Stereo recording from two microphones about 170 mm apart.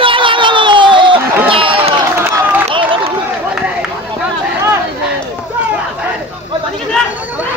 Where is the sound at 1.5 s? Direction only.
30° right (ahead or behind).